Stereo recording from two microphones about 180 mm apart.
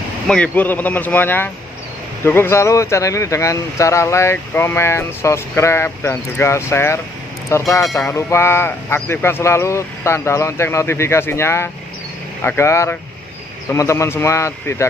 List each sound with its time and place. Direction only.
0.3 s speech: 10° left (ahead or behind)